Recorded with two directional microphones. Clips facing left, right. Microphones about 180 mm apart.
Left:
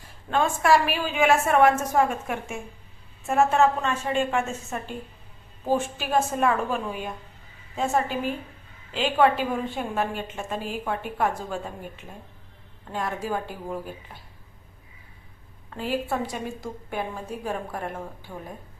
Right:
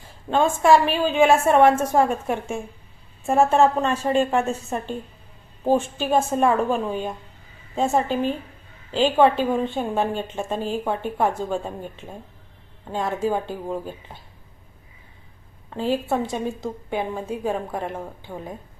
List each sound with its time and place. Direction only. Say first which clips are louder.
0.3 s a woman's voice: right 4 dB; 25° right (ahead or behind)
15.8 s a woman's voice: right 4 dB; 25° right (ahead or behind)